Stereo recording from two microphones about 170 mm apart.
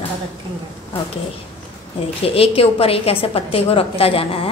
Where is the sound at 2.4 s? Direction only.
35° left (ahead or behind).